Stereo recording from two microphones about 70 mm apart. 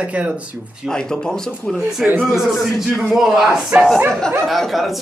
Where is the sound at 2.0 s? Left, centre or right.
Centre.